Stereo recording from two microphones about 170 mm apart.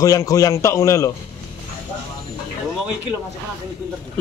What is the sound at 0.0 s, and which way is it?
A man's voice, 20° left (ahead or behind).